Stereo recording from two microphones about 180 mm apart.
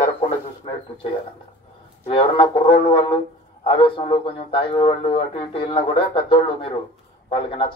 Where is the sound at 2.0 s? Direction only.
30° left (ahead or behind).